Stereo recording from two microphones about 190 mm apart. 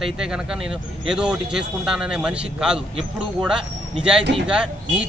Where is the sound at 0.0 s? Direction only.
5° right (ahead or behind).